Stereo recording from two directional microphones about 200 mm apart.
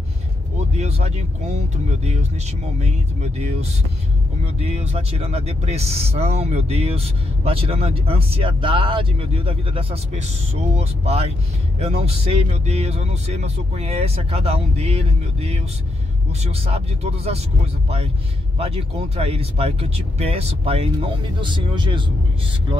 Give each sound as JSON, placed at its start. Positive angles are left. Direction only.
{"t": 0.7, "sound": "speech", "side_deg": -30}
{"t": 4.6, "sound": "speech", "side_deg": -30}